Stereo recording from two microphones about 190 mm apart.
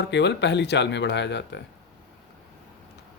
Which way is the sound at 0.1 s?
65° left (ahead or behind).